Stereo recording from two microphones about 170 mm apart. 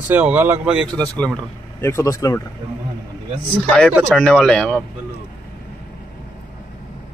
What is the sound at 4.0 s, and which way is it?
Speech, 5° left (ahead or behind).